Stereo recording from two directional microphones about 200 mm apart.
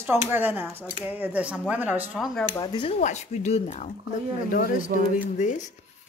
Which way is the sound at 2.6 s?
25° left (ahead or behind).